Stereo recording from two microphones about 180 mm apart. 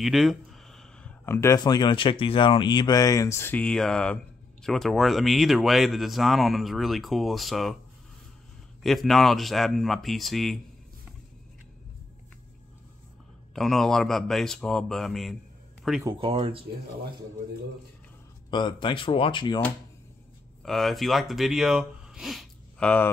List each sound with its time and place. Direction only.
0.0 s speech: centre (ahead or behind)
8.8 s speech: centre (ahead or behind)
13.6 s speech: centre (ahead or behind)
16.0 s speech: 25° right (ahead or behind)
18.5 s speech: 25° left (ahead or behind)
20.6 s speech: centre (ahead or behind)